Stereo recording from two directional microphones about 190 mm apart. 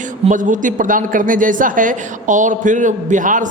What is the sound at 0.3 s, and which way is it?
Speech, 45° right (ahead or behind).